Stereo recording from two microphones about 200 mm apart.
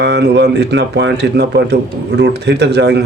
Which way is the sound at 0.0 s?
60° right (ahead or behind).